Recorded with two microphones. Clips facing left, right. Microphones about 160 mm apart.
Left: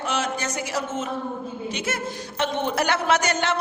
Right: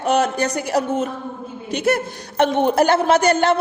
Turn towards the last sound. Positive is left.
turn(degrees=-35)  # may be behind; listen again after turning